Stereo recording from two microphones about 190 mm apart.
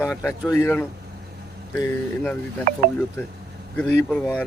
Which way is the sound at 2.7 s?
50° right (ahead or behind).